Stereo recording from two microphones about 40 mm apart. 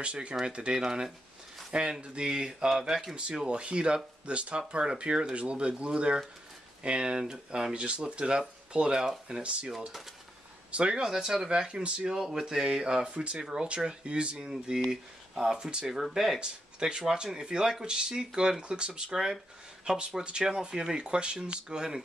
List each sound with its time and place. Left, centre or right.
0.0 s speech: right
0.8 s speech: centre
1.7 s speech: right
3.4 s speech: right
7.7 s speech: right
10.7 s speech: right
11.1 s speech: centre; by 12.1 s right
12.1 s speech: centre
14.4 s speech: centre
16.1 s speech: centre
16.3 s speech: right